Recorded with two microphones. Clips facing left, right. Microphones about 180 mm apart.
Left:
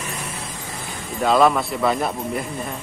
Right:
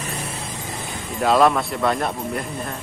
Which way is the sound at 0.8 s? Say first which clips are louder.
Even; centre (ahead or behind).